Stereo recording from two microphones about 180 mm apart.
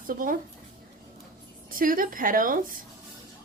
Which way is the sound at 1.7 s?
50° right (ahead or behind).